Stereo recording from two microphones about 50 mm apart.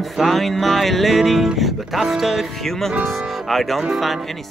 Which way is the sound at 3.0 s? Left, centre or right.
Centre.